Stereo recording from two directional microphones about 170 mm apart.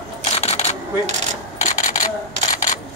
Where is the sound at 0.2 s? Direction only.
35° left (ahead or behind).